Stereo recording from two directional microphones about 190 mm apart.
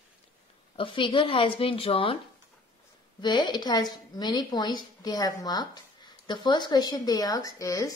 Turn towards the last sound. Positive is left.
turn(degrees=15)  # may be behind; listen again after turning